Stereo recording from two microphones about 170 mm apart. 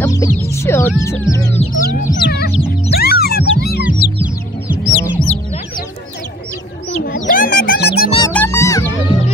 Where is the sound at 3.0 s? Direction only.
65° left (ahead or behind).